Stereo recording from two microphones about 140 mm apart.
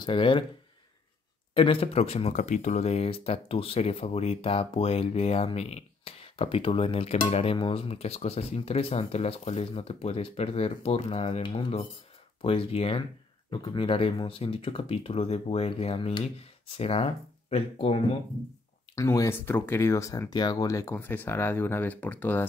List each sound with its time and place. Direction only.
0.0 s speech: 35° left (ahead or behind)
1.5 s speech: 40° left (ahead or behind)
7.5 s speech: 40° left (ahead or behind)
18.9 s speech: 20° left (ahead or behind)